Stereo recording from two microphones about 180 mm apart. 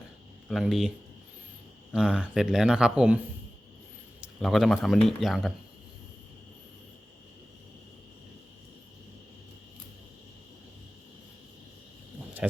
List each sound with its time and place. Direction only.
0.4 s speech: centre (ahead or behind)
4.4 s speech: centre (ahead or behind)
12.4 s speech: 5° right (ahead or behind)